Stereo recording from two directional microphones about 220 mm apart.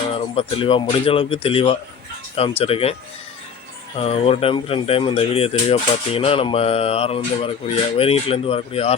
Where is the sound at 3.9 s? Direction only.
25° left (ahead or behind).